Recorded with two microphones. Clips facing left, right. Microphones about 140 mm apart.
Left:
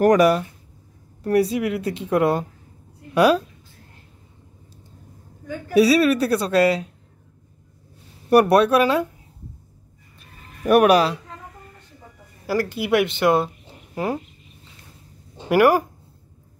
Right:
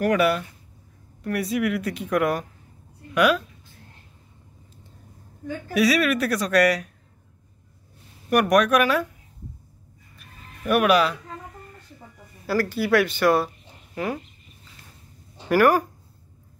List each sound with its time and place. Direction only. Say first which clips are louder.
0.0 s a woman's voice: left 5 dB; 40° left (ahead or behind)
5.8 s speech: left 5 dB; 30° left (ahead or behind)
8.3 s a woman's voice: left 4 dB; 30° left (ahead or behind)
10.1 s chicken: left 1 dB; 40° left (ahead or behind)
12.4 s a woman's voice: left 1 dB; 20° left (ahead or behind)
15.3 s speech: left 2 dB; 20° left (ahead or behind)